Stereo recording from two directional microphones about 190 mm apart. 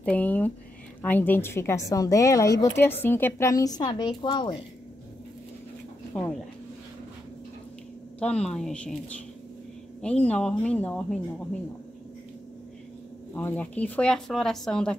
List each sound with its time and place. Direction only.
0.0 s a woman's voice: 5° left (ahead or behind); by 4.6 s 25° left (ahead or behind)
6.1 s a woman's voice: 5° left (ahead or behind)
8.2 s speech: 5° left (ahead or behind)
10.0 s speech: 5° left (ahead or behind)
13.3 s speech: 10° left (ahead or behind)